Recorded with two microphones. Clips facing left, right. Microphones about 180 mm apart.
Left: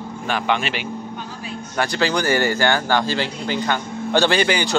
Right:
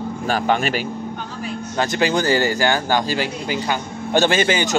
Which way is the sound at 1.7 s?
20° right (ahead or behind).